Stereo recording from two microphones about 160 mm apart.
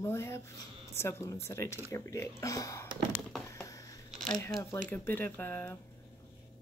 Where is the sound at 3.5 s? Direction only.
20° left (ahead or behind).